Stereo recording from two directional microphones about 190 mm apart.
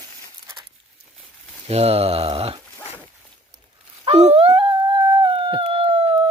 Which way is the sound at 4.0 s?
35° right (ahead or behind).